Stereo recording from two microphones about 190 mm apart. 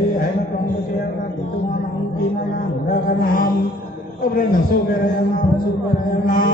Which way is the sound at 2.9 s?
45° left (ahead or behind).